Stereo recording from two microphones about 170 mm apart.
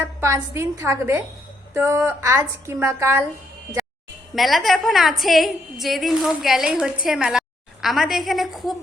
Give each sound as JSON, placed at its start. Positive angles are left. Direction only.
{"t": 0.0, "sound": "a woman's voice", "side_deg": -15}
{"t": 4.4, "sound": "a woman's voice", "side_deg": 0}